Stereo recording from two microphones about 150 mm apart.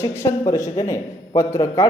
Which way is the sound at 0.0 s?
20° left (ahead or behind).